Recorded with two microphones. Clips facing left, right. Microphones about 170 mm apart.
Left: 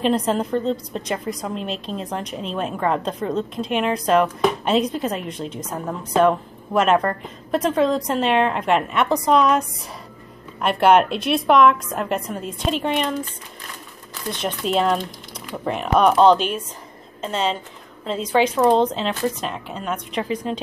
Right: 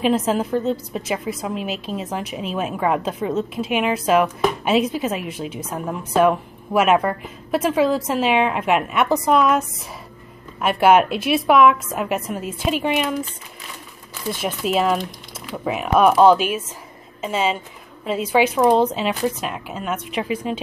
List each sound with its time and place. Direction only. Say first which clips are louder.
0.0 s a woman's voice: right 1 dB; 5° right (ahead or behind)